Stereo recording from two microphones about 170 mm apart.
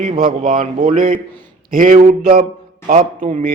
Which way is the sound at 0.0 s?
50° right (ahead or behind).